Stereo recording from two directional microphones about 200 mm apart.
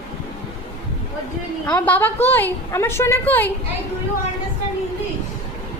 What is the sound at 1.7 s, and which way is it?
A woman's voice, 5° left (ahead or behind).